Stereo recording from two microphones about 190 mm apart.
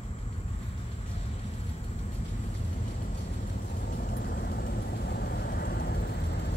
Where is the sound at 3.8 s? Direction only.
50° left (ahead or behind).